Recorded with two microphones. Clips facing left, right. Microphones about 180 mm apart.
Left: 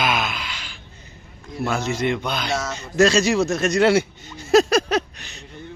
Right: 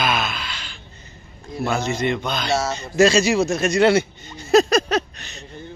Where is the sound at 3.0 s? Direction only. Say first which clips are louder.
Right 1 dB; 5° right (ahead or behind).